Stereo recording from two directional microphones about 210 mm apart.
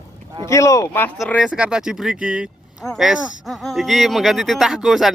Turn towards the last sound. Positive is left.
turn(degrees=0)  # may be behind; listen again after turning